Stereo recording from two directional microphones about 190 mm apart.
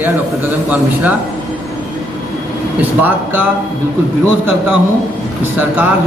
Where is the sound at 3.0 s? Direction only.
10° right (ahead or behind).